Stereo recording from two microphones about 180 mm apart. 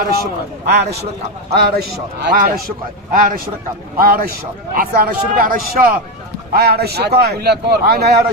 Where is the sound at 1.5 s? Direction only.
65° right (ahead or behind).